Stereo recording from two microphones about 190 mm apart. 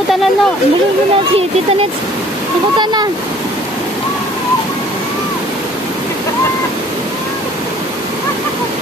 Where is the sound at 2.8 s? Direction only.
20° right (ahead or behind).